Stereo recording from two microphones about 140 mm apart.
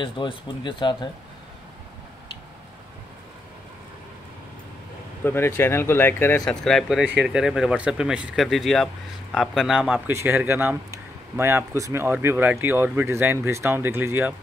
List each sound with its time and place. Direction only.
0.0 s speech: 35° left (ahead or behind)
5.2 s speech: 15° left (ahead or behind)
6.5 s speech: 5° left (ahead or behind); by 14.3 s 15° right (ahead or behind)